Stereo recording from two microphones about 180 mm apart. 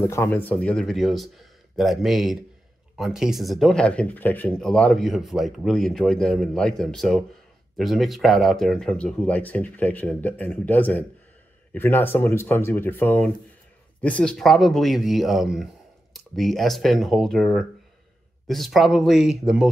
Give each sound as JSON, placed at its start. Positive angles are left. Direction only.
{"t": 0.0, "sound": "speech", "side_deg": 15}